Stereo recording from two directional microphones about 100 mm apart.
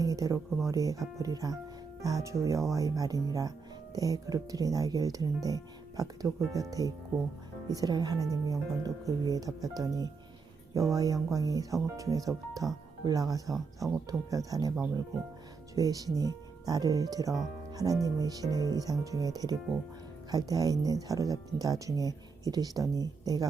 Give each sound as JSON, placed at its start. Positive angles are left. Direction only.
{"t": 0.0, "sound": "speech", "side_deg": -35}
{"t": 15.7, "sound": "speech", "side_deg": -35}
{"t": 17.7, "sound": "music", "side_deg": -40}
{"t": 18.0, "sound": "speech", "side_deg": -40}